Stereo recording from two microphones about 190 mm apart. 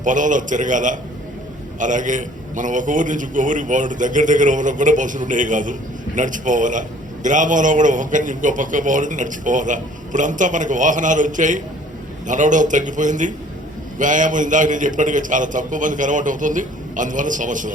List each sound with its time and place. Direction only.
0.0 s a man's voice: 40° right (ahead or behind)